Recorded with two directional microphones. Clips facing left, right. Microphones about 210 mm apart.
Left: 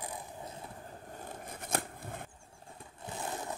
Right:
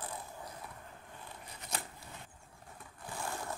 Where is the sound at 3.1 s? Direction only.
20° left (ahead or behind).